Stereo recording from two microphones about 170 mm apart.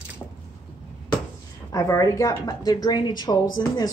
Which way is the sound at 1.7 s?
20° left (ahead or behind).